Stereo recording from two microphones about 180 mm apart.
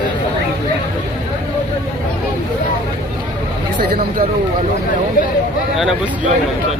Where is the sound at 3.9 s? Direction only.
60° right (ahead or behind).